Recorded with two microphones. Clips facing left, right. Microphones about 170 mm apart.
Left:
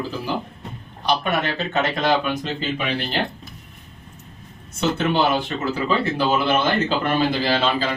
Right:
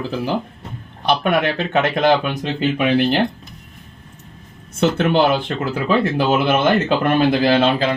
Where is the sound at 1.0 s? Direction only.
55° right (ahead or behind).